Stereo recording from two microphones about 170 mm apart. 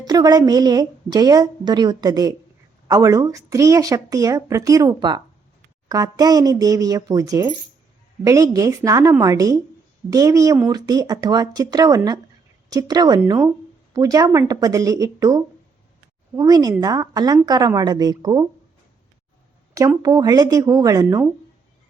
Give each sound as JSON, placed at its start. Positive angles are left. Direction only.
{"t": 0.0, "sound": "a woman's voice", "side_deg": -25}
{"t": 20.0, "sound": "a woman's voice", "side_deg": -20}